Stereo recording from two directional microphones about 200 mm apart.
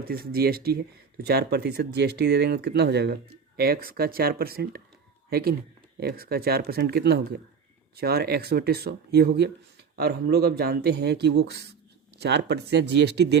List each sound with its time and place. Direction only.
0.0 s speech: 50° right (ahead or behind)